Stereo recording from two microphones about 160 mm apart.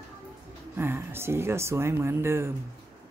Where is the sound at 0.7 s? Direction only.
15° right (ahead or behind).